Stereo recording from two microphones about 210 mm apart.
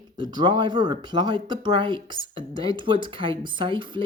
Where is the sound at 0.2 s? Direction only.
20° right (ahead or behind).